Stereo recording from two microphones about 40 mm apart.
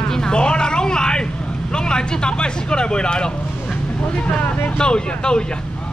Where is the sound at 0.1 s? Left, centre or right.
Left.